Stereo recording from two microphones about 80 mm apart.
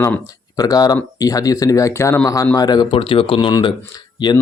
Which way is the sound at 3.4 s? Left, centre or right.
Left.